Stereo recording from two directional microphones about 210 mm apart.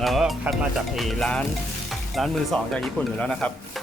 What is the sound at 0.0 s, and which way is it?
Speech, centre (ahead or behind).